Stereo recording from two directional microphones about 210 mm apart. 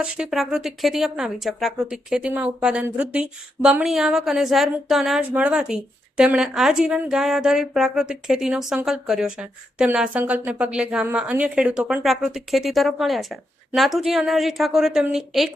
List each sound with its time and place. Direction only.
0.0 s speech: 5° right (ahead or behind)